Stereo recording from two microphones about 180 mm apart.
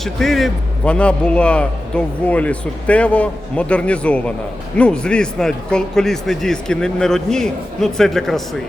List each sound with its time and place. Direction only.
0.0 s a man's voice: centre (ahead or behind)